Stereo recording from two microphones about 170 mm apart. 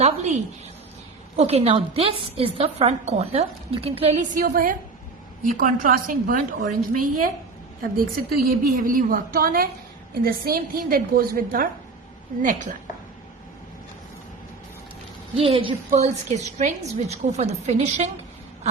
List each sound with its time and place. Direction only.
0.0 s a woman's voice: 40° right (ahead or behind)
1.4 s a woman's voice: 40° right (ahead or behind)
4.4 s a woman's voice: 55° right (ahead or behind)
7.8 s a woman's voice: 55° right (ahead or behind)
15.4 s a woman's voice: 35° right (ahead or behind)